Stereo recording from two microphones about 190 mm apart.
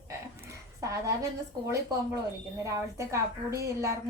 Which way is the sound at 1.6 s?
15° right (ahead or behind).